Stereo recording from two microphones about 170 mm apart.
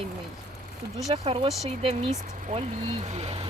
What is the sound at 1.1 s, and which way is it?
Speech, 30° right (ahead or behind).